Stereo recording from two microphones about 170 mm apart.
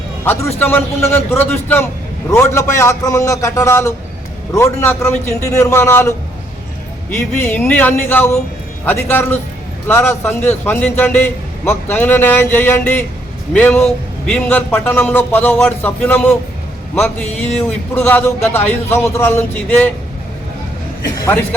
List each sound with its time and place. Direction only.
0.3 s a man's voice: 10° left (ahead or behind)
7.3 s a man's voice: 10° left (ahead or behind)